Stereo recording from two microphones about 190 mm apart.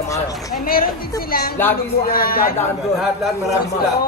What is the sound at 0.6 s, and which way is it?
Speech, 50° left (ahead or behind).